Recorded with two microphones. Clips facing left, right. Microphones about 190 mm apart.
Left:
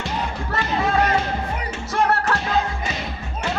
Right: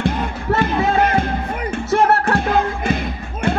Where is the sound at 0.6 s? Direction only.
55° right (ahead or behind).